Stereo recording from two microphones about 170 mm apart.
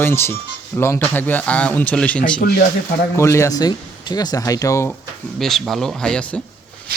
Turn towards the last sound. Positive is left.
turn(degrees=5)  # may be behind; listen again after turning